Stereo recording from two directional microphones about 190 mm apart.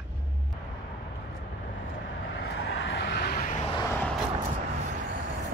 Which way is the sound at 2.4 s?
65° left (ahead or behind).